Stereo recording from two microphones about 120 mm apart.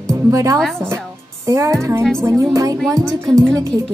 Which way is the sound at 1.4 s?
25° right (ahead or behind).